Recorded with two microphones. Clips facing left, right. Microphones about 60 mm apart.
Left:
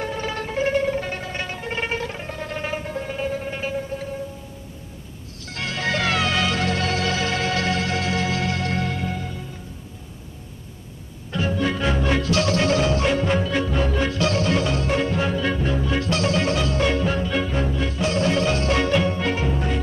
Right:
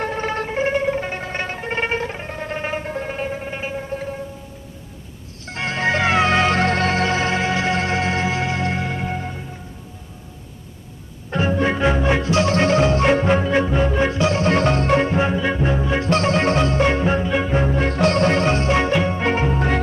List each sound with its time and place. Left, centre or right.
0.0 s music: right
5.4 s music: right
11.2 s music: right
15.0 s music: right
17.6 s music: right
17.9 s music: right